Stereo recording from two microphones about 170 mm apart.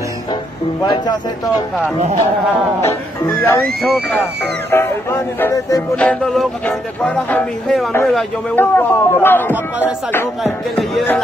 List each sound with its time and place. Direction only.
0.8 s speech: 25° left (ahead or behind)
2.8 s music: 15° left (ahead or behind)
4.6 s music: 15° left (ahead or behind)
5.9 s music: 5° left (ahead or behind)
8.5 s music: 10° left (ahead or behind)
9.5 s music: 10° right (ahead or behind)
10.4 s music: centre (ahead or behind)